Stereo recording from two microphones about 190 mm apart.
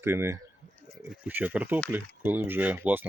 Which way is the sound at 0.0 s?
15° right (ahead or behind).